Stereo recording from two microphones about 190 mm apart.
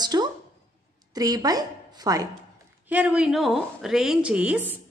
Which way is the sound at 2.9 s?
5° right (ahead or behind).